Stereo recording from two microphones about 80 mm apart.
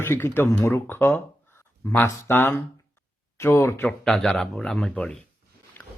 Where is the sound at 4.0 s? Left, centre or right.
Centre.